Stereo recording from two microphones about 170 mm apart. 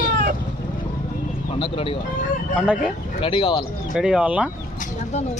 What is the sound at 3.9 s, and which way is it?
Speech, 5° right (ahead or behind).